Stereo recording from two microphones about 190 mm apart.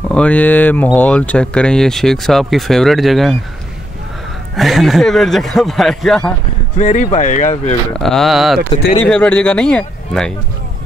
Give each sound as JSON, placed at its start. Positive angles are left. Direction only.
{"t": 0.1, "sound": "speech", "side_deg": 5}
{"t": 4.6, "sound": "speech", "side_deg": 0}
{"t": 6.8, "sound": "speech", "side_deg": 40}
{"t": 7.9, "sound": "speech", "side_deg": 0}